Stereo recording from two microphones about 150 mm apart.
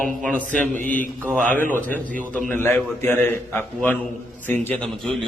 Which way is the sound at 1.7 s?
10° left (ahead or behind).